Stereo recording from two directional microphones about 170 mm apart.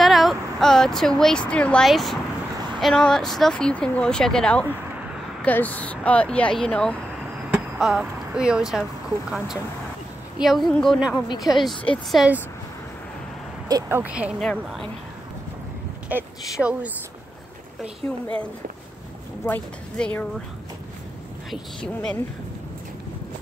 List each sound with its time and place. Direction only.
0.0 s speech: centre (ahead or behind)
10.4 s speech: centre (ahead or behind)
11.2 s a woman's voice: 25° left (ahead or behind)
11.9 s speech: centre (ahead or behind)
13.7 s speech: 15° right (ahead or behind)
14.5 s speech: 5° left (ahead or behind)
16.1 s speech: 10° right (ahead or behind)
18.0 s speech: 5° left (ahead or behind)
21.5 s speech: 5° left (ahead or behind)